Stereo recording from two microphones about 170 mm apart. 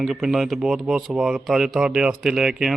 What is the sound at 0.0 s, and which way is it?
Speech, 5° right (ahead or behind).